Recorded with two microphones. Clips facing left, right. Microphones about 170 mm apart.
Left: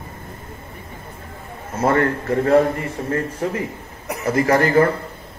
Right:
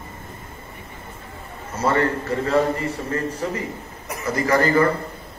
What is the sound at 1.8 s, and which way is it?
Speech, 50° left (ahead or behind).